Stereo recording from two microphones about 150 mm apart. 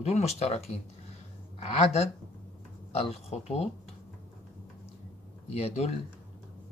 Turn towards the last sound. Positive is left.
turn(degrees=45)  # may be behind; listen again after turning